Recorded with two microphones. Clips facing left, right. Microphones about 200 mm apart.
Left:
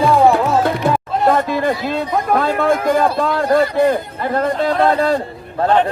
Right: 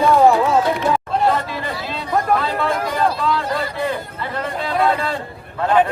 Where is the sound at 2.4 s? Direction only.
50° left (ahead or behind).